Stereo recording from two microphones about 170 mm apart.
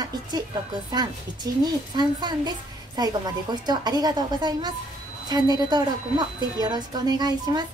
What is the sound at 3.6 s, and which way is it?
A woman's voice, 25° right (ahead or behind).